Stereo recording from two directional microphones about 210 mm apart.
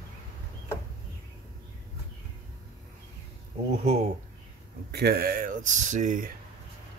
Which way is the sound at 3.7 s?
30° right (ahead or behind).